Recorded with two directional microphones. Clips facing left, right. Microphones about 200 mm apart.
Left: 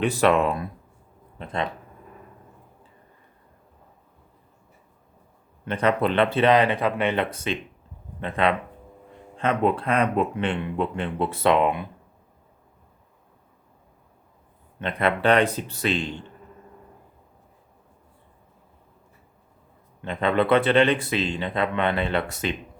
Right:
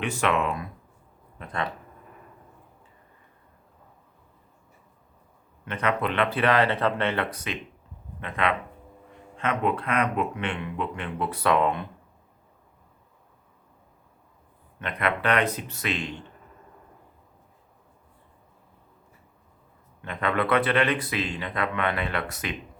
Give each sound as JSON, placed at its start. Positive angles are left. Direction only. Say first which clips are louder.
{"t": 0.0, "sound": "speech", "louder": "left 6 dB", "side_deg": 35}
{"t": 1.4, "sound": "speech", "louder": "left 3 dB", "side_deg": 25}
{"t": 5.6, "sound": "speech", "louder": "left 5 dB", "side_deg": 30}
{"t": 14.8, "sound": "speech", "louder": "left 4 dB", "side_deg": 30}
{"t": 20.0, "sound": "speech", "louder": "left 4 dB", "side_deg": 25}